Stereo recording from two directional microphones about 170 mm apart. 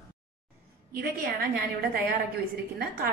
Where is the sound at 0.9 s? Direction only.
65° right (ahead or behind).